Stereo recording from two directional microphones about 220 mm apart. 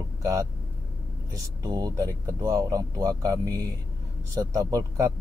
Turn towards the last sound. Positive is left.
turn(degrees=-15)  # may be behind; listen again after turning